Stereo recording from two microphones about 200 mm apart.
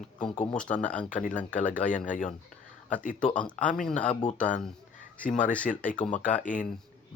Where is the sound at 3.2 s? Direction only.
5° left (ahead or behind).